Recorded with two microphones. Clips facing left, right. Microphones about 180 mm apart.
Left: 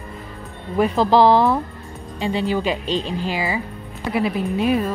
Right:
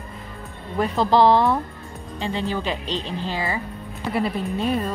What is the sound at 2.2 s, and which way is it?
Speech, 15° left (ahead or behind).